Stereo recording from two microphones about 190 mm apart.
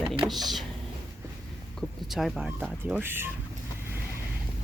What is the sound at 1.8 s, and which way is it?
Speech, centre (ahead or behind).